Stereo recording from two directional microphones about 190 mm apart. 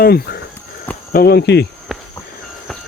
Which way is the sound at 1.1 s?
55° left (ahead or behind).